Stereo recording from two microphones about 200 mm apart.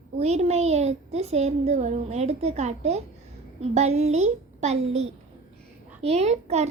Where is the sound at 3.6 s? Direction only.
35° right (ahead or behind).